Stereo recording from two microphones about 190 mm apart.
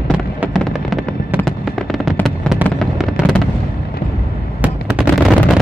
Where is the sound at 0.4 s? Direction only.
5° right (ahead or behind).